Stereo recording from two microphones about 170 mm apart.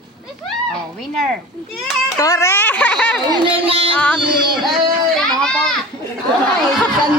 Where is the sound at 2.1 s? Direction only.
20° left (ahead or behind).